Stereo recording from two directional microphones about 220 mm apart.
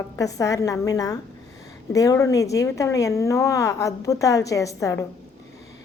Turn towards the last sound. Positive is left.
turn(degrees=15)  # may be behind; listen again after turning